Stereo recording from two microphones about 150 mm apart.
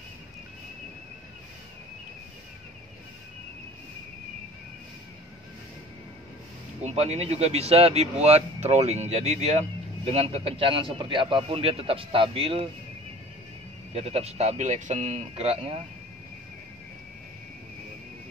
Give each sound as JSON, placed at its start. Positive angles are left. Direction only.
{"t": 6.8, "sound": "speech", "side_deg": -45}
{"t": 13.9, "sound": "speech", "side_deg": -40}